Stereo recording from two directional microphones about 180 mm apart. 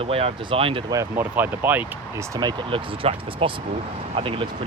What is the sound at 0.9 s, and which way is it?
Speech, 10° right (ahead or behind).